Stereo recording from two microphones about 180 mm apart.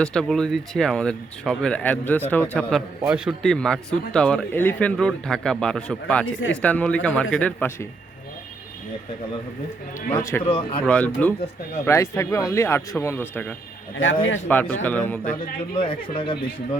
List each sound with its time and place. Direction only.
0.0 s speech: 5° left (ahead or behind)
3.0 s a man's voice: 5° right (ahead or behind)
3.4 s speech: 5° left (ahead or behind)
10.2 s speech: 15° left (ahead or behind)
10.4 s speech: 30° left (ahead or behind)
10.8 s speech: 5° left (ahead or behind)
15.4 s speech: 30° left (ahead or behind)